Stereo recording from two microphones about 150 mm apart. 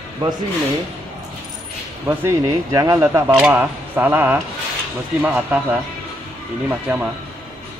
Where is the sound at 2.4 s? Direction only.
25° right (ahead or behind); by 5.8 s 10° right (ahead or behind).